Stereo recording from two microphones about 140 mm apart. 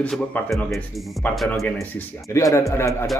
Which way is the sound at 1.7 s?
15° left (ahead or behind).